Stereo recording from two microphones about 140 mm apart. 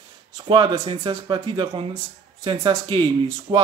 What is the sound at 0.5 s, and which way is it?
Speech, 30° right (ahead or behind).